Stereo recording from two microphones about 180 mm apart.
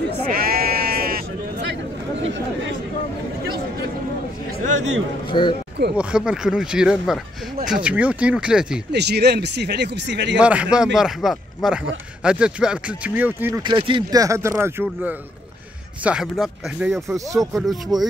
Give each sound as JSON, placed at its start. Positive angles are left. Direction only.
{"t": 0.3, "sound": "sheep", "side_deg": -55}
{"t": 5.3, "sound": "a man's voice", "side_deg": 25}
{"t": 5.9, "sound": "speech", "side_deg": -5}
{"t": 8.9, "sound": "speech", "side_deg": -65}
{"t": 10.4, "sound": "speech", "side_deg": -5}
{"t": 13.6, "sound": "speech", "side_deg": -25}
{"t": 17.3, "sound": "speech", "side_deg": -20}
{"t": 17.6, "sound": "speech", "side_deg": 0}